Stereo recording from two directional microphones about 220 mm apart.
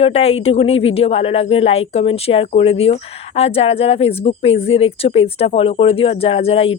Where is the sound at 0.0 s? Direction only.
25° left (ahead or behind).